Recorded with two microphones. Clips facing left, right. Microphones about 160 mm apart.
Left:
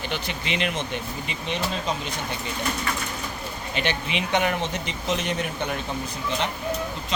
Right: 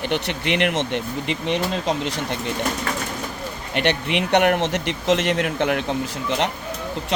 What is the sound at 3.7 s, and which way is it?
Speech, 65° right (ahead or behind).